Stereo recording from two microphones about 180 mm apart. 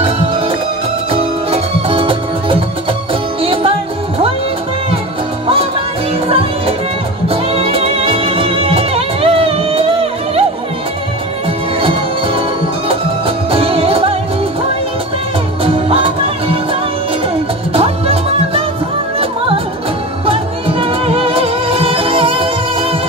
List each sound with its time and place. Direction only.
0.0 s music: 30° right (ahead or behind)
7.2 s music: 30° right (ahead or behind)
13.5 s music: 30° right (ahead or behind)
15.6 s music: 30° right (ahead or behind)
17.7 s music: 35° right (ahead or behind)
20.2 s music: 30° right (ahead or behind)